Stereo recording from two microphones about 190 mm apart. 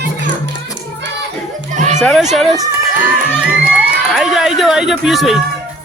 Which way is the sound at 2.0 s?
Centre (ahead or behind).